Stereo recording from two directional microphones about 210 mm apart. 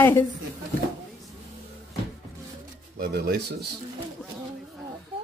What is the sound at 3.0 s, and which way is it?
Speech, 50° right (ahead or behind).